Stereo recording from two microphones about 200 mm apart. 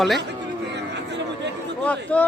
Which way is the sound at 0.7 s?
60° right (ahead or behind).